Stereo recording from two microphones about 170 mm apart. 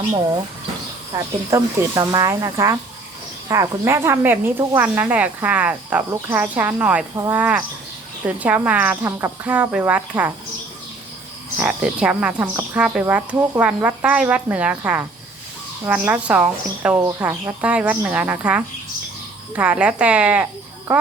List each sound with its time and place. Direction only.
1.1 s speech: 20° right (ahead or behind)
11.5 s speech: 5° right (ahead or behind)